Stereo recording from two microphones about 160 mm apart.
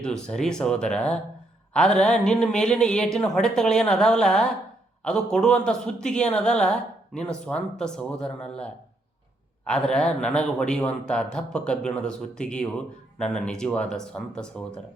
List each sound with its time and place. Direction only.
0.0 s speech: 5° left (ahead or behind)